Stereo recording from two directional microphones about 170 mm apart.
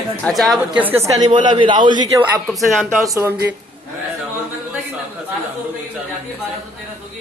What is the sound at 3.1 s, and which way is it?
Speech, 15° right (ahead or behind).